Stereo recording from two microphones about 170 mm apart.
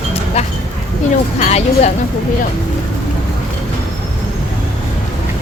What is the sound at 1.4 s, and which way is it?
Speech, 40° left (ahead or behind).